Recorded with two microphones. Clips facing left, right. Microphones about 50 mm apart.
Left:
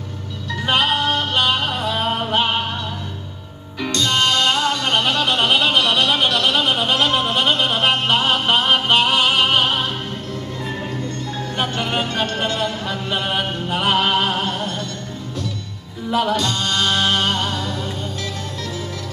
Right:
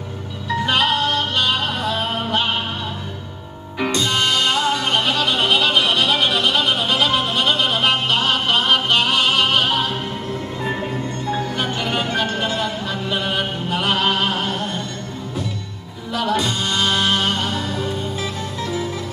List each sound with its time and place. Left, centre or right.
0.7 s music: centre
1.5 s music: centre
3.8 s music: centre
5.8 s a sound: centre
6.1 s music: centre
6.7 s music: centre
7.2 s music: centre
11.7 s music: centre
12.4 s music: centre
16.1 s music: centre
16.3 s music: centre